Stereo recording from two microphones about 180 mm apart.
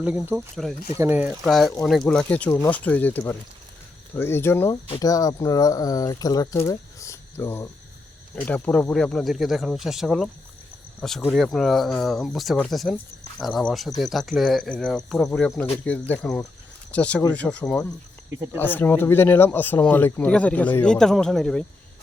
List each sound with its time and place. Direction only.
0.0 s speech: 10° right (ahead or behind)
0.5 s speech: centre (ahead or behind)
0.9 s speech: 10° right (ahead or behind); by 3.2 s 10° left (ahead or behind)
4.2 s speech: 15° left (ahead or behind)